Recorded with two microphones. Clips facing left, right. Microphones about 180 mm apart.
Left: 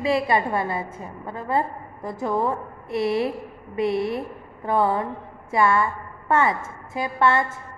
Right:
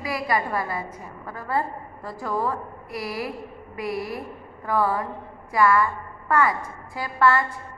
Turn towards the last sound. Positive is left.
turn(degrees=20)  # may be behind; listen again after turning